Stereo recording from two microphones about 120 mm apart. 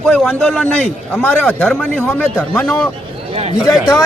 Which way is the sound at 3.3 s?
60° right (ahead or behind).